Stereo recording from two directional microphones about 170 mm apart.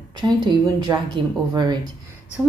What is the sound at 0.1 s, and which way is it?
Speech, 25° right (ahead or behind).